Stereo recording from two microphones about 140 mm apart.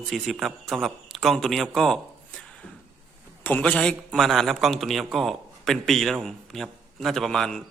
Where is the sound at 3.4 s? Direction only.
10° left (ahead or behind).